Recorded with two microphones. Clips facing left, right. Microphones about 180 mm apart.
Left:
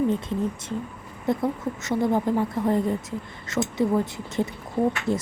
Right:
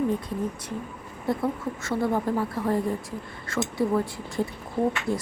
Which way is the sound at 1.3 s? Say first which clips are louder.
Left 2 dB; 20° left (ahead or behind).